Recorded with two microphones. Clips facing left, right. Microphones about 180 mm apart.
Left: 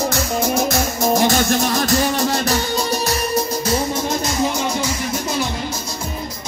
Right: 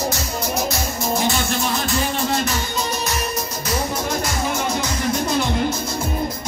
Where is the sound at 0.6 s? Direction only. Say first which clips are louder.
Left 5 dB; 45° left (ahead or behind).